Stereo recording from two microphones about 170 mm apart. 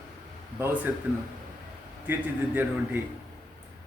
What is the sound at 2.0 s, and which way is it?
Speech, 10° right (ahead or behind).